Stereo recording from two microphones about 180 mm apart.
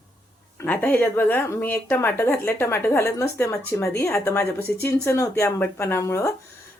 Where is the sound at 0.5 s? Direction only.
10° left (ahead or behind).